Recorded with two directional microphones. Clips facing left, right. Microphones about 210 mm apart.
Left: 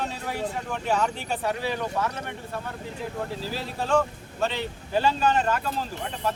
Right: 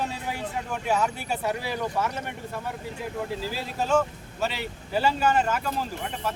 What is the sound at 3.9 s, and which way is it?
Speech, 5° right (ahead or behind).